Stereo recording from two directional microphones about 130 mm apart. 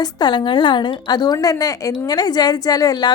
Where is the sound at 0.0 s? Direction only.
35° left (ahead or behind).